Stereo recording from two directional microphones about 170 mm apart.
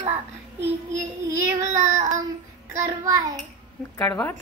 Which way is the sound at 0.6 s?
15° right (ahead or behind).